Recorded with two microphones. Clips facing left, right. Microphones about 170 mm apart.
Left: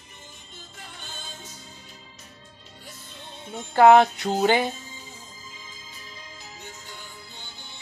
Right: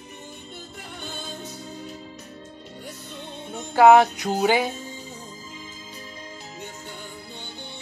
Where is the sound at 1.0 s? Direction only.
60° right (ahead or behind).